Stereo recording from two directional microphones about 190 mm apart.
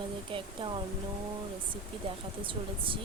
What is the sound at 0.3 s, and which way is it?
Speech, 30° right (ahead or behind).